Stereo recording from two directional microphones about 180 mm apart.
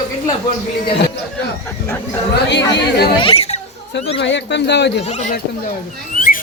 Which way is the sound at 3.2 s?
30° left (ahead or behind).